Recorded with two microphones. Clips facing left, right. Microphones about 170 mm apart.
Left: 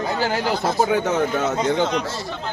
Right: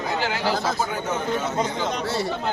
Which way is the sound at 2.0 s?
65° right (ahead or behind).